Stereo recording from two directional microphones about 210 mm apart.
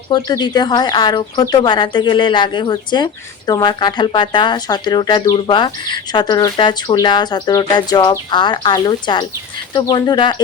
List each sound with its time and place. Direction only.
0.1 s speech: 20° left (ahead or behind)